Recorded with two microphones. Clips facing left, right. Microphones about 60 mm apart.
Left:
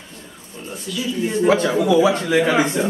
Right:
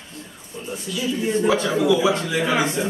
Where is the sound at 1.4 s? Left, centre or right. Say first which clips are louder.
Left 3 dB; left.